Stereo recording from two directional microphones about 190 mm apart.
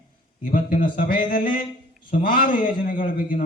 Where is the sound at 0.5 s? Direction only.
45° left (ahead or behind).